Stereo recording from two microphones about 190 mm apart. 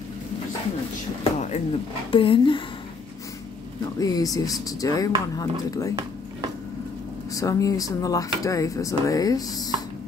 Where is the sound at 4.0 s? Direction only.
20° left (ahead or behind).